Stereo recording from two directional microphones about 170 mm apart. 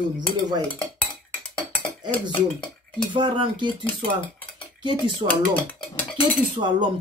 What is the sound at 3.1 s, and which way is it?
Speech, 30° right (ahead or behind).